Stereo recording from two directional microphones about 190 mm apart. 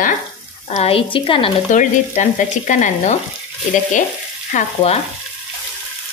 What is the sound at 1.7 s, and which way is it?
Stir, 40° left (ahead or behind).